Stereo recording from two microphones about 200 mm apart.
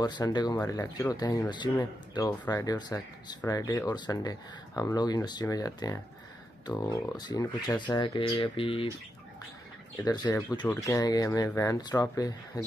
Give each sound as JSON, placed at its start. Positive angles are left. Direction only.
{"t": 0.0, "sound": "speech", "side_deg": 20}
{"t": 10.0, "sound": "speech", "side_deg": 20}